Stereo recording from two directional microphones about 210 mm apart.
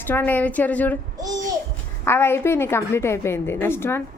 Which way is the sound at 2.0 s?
10° left (ahead or behind).